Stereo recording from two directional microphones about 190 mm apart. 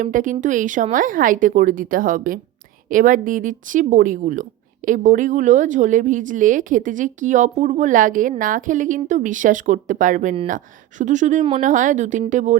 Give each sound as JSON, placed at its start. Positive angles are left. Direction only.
{"t": 0.0, "sound": "speech", "side_deg": -45}